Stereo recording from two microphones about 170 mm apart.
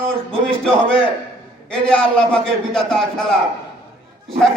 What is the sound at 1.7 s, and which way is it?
A man's voice, 5° left (ahead or behind).